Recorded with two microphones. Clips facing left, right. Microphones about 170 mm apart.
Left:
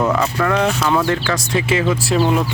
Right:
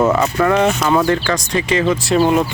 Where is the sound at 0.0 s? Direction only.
5° right (ahead or behind).